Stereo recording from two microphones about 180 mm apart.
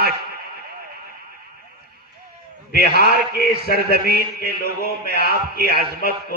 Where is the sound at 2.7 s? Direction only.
60° right (ahead or behind).